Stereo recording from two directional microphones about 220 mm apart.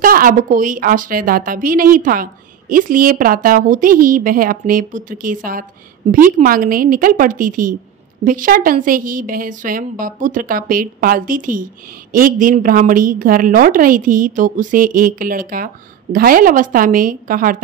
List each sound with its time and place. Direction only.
0.0 s a woman's voice: 40° right (ahead or behind)